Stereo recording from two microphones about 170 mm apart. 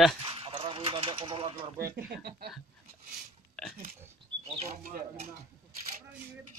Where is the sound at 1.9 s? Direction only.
65° right (ahead or behind).